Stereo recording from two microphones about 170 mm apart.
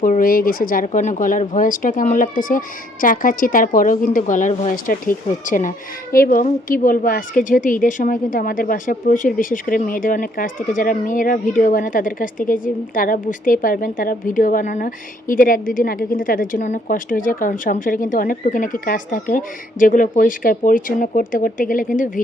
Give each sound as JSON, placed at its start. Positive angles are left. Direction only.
{"t": 0.0, "sound": "speech", "side_deg": 55}